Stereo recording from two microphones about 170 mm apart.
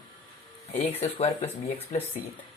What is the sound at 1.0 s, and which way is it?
Speech, 40° left (ahead or behind).